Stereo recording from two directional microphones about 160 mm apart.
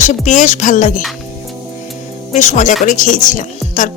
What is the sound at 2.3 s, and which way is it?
Speech, 50° left (ahead or behind).